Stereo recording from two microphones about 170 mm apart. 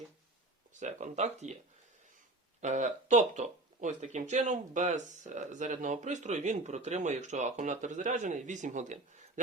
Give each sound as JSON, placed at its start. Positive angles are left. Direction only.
{"t": 0.8, "sound": "speech", "side_deg": -45}
{"t": 2.6, "sound": "speech", "side_deg": -45}